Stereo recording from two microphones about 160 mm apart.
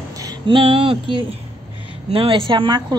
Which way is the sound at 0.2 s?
30° right (ahead or behind).